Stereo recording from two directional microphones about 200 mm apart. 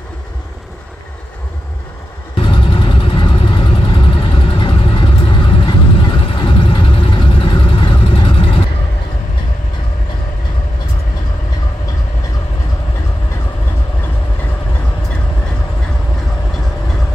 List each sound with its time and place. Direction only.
2.3 s vehicle: 25° left (ahead or behind)